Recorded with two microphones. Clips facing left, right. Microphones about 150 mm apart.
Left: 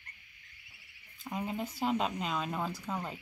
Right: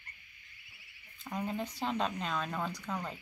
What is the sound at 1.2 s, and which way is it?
Speech, 5° left (ahead or behind).